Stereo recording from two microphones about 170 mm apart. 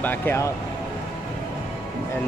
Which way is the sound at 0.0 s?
10° left (ahead or behind).